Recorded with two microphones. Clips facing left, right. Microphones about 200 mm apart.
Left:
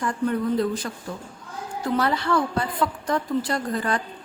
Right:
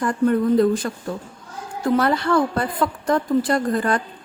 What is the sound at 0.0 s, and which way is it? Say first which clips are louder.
A woman's voice: right 6 dB; 50° right (ahead or behind).